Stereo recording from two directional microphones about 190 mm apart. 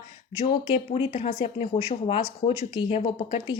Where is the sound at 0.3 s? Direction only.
35° left (ahead or behind).